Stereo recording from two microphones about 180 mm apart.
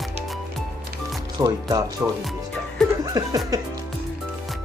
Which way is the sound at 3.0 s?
20° right (ahead or behind).